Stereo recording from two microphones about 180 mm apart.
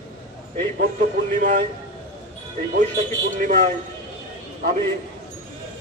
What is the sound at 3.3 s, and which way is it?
Speech, 45° right (ahead or behind).